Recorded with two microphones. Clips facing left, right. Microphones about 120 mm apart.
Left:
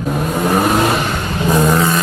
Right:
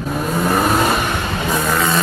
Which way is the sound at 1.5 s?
15° left (ahead or behind).